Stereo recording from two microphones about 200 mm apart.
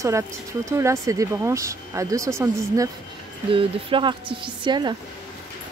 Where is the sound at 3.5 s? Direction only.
25° right (ahead or behind).